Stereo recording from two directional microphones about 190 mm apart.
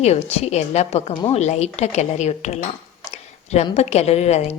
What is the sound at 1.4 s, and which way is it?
A woman's voice, 35° left (ahead or behind).